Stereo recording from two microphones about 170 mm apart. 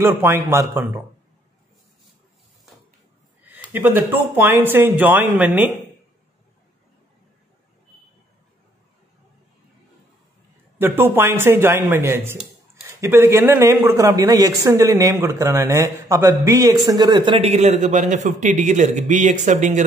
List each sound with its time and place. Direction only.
0.0 s speech: 15° right (ahead or behind)
3.4 s speech: 10° right (ahead or behind)
10.8 s a man's voice: 10° right (ahead or behind); by 19.8 s 45° right (ahead or behind)